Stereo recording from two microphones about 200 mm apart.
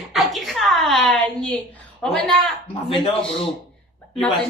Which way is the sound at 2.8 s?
25° left (ahead or behind).